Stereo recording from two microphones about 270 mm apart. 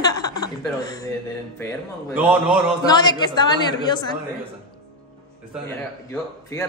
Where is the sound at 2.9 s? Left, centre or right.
Centre.